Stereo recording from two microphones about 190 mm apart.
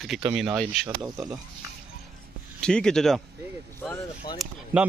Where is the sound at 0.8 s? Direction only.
20° right (ahead or behind).